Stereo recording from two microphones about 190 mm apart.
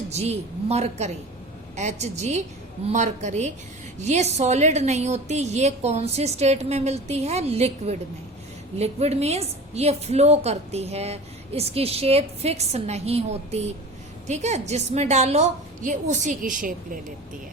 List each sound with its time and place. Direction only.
0.1 s a woman's voice: 35° right (ahead or behind)